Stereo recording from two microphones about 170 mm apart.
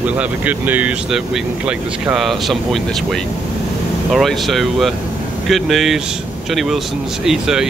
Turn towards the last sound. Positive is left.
turn(degrees=-5)  # may be behind; listen again after turning